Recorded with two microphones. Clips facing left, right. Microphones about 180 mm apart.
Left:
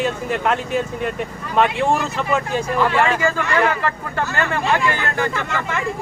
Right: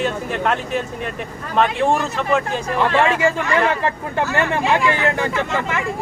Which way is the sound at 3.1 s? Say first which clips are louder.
Right 1 dB; 20° right (ahead or behind).